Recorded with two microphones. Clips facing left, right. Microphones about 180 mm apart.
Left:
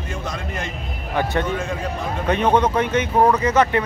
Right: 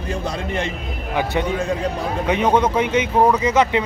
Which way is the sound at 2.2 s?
10° right (ahead or behind).